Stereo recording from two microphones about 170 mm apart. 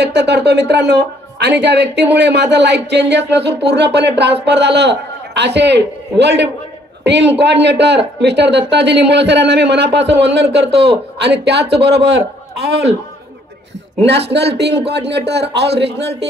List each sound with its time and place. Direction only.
0.0 s a man's voice: 85° right
14.0 s speech: 80° right